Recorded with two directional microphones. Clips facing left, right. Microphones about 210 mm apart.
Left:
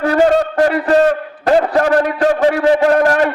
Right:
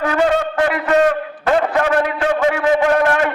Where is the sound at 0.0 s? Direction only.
40° left (ahead or behind).